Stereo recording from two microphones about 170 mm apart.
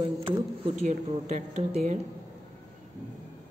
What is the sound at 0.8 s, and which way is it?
Speech, 45° right (ahead or behind).